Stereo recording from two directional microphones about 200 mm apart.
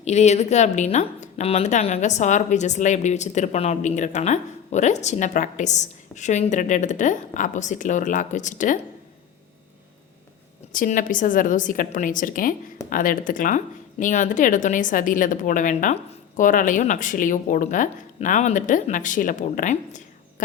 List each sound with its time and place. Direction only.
0.0 s a woman's voice: 35° left (ahead or behind)
10.7 s a woman's voice: 40° left (ahead or behind)